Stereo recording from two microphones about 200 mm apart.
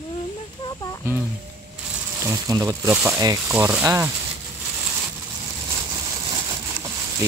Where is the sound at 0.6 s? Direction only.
20° left (ahead or behind).